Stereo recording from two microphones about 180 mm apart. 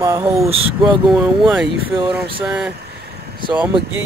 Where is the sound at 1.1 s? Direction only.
Centre (ahead or behind).